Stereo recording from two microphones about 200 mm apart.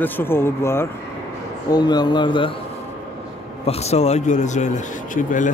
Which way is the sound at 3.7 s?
30° left (ahead or behind).